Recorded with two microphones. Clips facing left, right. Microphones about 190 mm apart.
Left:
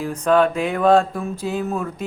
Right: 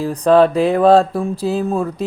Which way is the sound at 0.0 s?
35° right (ahead or behind).